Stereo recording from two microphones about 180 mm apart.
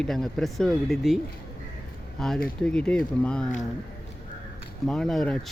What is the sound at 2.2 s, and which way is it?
Speech, centre (ahead or behind).